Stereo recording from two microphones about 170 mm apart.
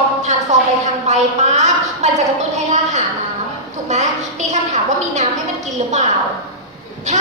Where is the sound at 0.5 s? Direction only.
45° right (ahead or behind).